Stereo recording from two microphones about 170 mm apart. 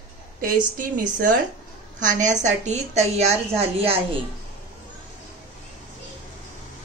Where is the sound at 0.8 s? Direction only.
50° right (ahead or behind); by 4.0 s 35° right (ahead or behind).